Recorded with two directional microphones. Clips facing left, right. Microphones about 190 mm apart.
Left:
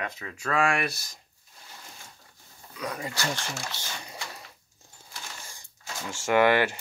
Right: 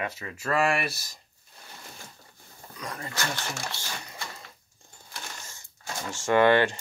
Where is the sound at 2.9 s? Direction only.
10° left (ahead or behind).